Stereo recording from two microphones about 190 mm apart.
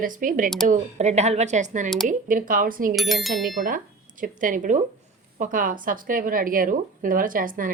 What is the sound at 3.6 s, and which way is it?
Speech, 45° right (ahead or behind).